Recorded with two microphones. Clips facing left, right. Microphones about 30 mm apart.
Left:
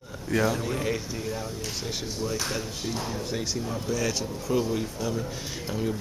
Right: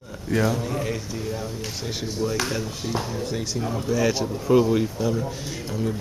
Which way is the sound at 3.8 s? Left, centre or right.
Centre.